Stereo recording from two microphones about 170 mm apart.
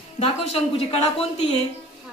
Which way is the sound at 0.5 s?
35° left (ahead or behind).